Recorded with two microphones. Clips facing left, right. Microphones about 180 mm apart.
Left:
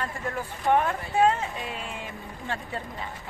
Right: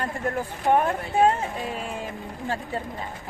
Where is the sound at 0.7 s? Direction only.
45° right (ahead or behind).